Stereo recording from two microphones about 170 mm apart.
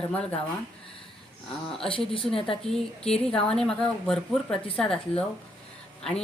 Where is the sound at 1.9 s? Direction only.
30° left (ahead or behind).